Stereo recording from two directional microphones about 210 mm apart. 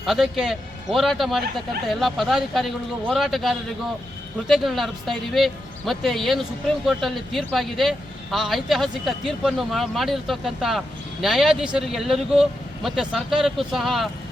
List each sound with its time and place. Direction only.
0.0 s a man's voice: centre (ahead or behind)